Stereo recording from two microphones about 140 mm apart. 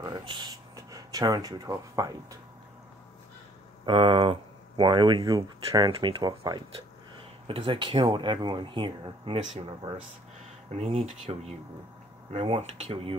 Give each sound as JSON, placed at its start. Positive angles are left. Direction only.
{"t": 0.0, "sound": "a sound", "side_deg": -30}
{"t": 3.8, "sound": "speech", "side_deg": -40}
{"t": 9.4, "sound": "speech", "side_deg": -55}
{"t": 10.7, "sound": "speech", "side_deg": -50}